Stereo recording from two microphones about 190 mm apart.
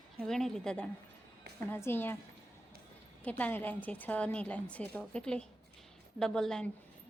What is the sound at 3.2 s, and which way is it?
A woman's voice, 10° left (ahead or behind).